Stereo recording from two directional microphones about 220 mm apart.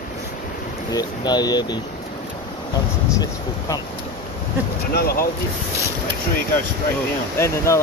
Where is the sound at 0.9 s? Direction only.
20° left (ahead or behind).